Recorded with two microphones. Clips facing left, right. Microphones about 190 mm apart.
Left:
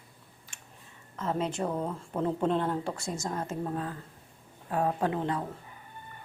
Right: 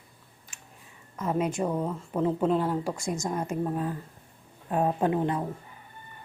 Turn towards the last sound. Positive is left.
turn(degrees=-20)  # may be behind; listen again after turning